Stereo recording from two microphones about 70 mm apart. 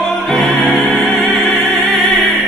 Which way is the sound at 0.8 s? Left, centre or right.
Centre.